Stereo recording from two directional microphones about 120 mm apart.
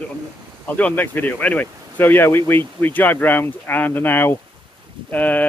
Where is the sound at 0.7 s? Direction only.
10° left (ahead or behind).